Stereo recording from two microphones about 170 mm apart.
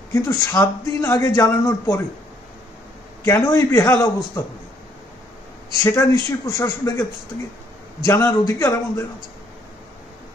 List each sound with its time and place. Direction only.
0.1 s speech: 20° left (ahead or behind)
3.3 s a man's voice: 15° left (ahead or behind)
5.9 s a man's voice: 20° left (ahead or behind)